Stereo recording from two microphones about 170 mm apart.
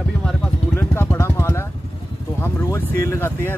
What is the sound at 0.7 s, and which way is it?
Speech, 15° left (ahead or behind).